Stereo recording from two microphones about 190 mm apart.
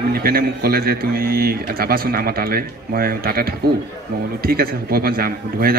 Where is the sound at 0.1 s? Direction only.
50° right (ahead or behind).